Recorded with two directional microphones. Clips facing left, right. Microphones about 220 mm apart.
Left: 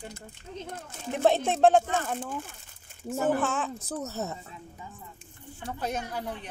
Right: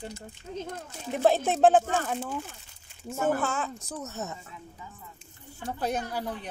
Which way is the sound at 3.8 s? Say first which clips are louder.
Left 3 dB; 35° left (ahead or behind).